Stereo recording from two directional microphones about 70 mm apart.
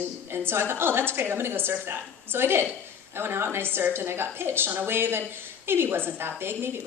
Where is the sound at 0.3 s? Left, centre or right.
Right.